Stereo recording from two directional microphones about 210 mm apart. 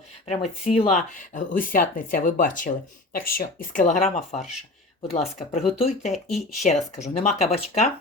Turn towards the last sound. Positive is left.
turn(degrees=30)  # may be behind; listen again after turning